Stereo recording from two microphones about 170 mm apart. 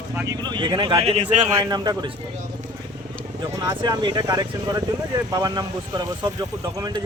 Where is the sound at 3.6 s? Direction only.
25° right (ahead or behind).